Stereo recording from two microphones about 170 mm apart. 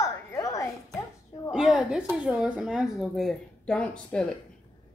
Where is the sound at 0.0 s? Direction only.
20° left (ahead or behind).